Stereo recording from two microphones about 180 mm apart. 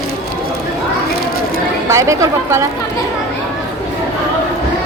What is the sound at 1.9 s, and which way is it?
Speech, 15° right (ahead or behind).